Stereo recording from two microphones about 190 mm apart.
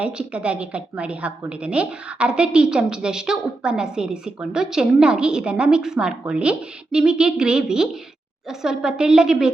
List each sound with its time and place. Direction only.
0.0 s a woman's voice: 5° right (ahead or behind)